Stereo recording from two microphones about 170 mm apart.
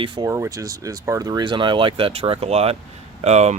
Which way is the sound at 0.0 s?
30° right (ahead or behind).